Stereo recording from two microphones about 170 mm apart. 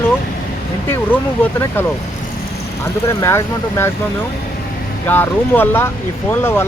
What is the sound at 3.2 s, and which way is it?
Speech, 15° left (ahead or behind).